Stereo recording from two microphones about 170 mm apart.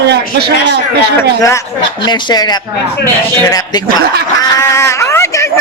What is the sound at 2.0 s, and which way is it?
Speech, 25° left (ahead or behind).